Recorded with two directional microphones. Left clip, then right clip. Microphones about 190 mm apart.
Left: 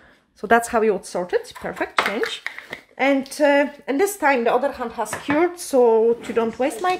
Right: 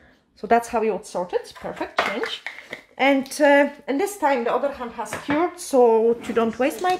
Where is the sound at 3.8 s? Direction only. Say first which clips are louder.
Left 3 dB; 20° left (ahead or behind).